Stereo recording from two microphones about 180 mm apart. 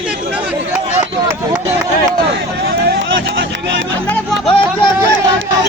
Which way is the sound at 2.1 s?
60° right (ahead or behind).